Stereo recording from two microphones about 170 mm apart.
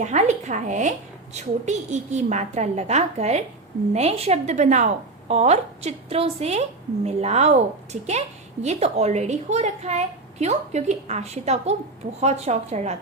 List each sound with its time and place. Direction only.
0.0 s a woman's voice: 45° right (ahead or behind)